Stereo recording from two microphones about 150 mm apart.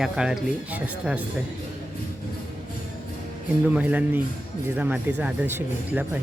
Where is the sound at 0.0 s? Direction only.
5° right (ahead or behind).